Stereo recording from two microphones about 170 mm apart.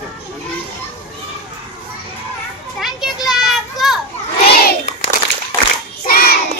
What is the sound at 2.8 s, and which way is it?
A child's voice, centre (ahead or behind).